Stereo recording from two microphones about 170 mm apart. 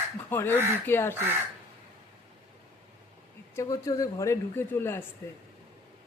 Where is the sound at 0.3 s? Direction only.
15° left (ahead or behind).